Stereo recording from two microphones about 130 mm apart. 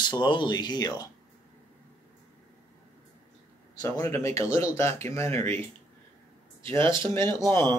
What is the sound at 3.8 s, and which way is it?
Speech, 20° left (ahead or behind).